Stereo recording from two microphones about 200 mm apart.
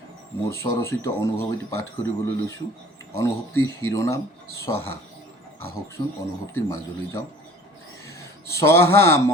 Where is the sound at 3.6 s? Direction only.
15° left (ahead or behind).